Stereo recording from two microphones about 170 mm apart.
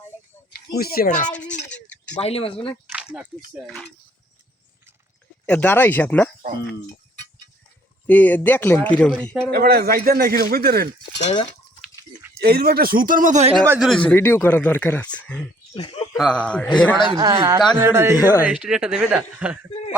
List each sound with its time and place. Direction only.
0.5 s speech: 65° left (ahead or behind); by 1.3 s 50° left (ahead or behind)
1.3 s a man's voice: 5° left (ahead or behind)
1.7 s a sound: 5° left (ahead or behind)
2.2 s speech: 35° left (ahead or behind)
2.9 s speech: 5° right (ahead or behind)
5.5 s a man's voice: 10° left (ahead or behind)
8.0 s a man's voice: 10° left (ahead or behind)
9.5 s a man's voice: 70° right (ahead or behind)
11.2 s sheep: 40° left (ahead or behind)
12.4 s a man's voice: 65° right (ahead or behind); by 13.5 s 45° right (ahead or behind)
13.7 s a man's voice: centre (ahead or behind)
15.7 s speech: 25° left (ahead or behind)
16.1 s speech: 5° left (ahead or behind)
17.1 s speech: 20° right (ahead or behind)